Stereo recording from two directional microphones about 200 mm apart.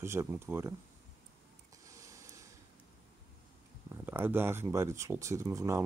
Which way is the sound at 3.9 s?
10° right (ahead or behind).